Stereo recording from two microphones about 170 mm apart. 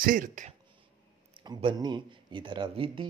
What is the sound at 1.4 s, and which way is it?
Speech, 25° right (ahead or behind).